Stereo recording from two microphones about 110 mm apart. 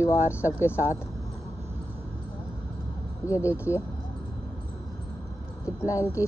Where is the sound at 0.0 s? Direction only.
25° left (ahead or behind).